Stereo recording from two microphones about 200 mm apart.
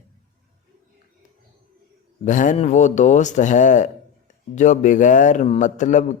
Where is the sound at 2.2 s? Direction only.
40° left (ahead or behind).